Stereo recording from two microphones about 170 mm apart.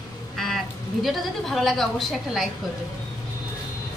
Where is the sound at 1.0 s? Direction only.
Centre (ahead or behind).